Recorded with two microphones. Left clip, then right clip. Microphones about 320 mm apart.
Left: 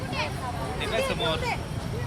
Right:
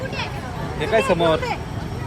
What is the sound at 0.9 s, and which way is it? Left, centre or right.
Speech, centre.